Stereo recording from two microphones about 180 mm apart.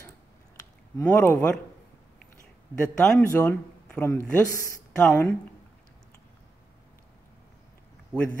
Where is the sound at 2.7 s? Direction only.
5° left (ahead or behind).